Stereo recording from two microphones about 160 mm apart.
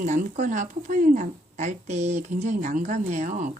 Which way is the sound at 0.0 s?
55° right (ahead or behind).